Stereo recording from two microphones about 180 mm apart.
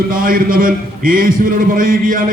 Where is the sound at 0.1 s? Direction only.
50° right (ahead or behind).